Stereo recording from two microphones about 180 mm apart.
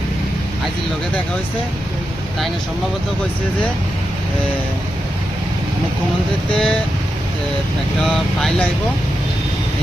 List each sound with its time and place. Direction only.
6.5 s speech: 5° left (ahead or behind)
8.0 s speech: centre (ahead or behind)